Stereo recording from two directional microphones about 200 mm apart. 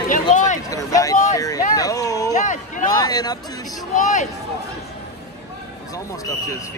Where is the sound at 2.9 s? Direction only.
20° left (ahead or behind).